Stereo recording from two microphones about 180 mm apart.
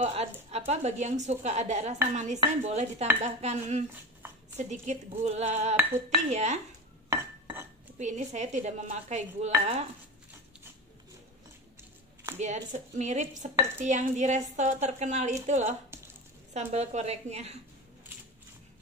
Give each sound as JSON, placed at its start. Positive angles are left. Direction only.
{"t": 0.0, "sound": "a woman's voice", "side_deg": -35}
{"t": 8.0, "sound": "a woman's voice", "side_deg": -40}
{"t": 12.4, "sound": "a woman's voice", "side_deg": -40}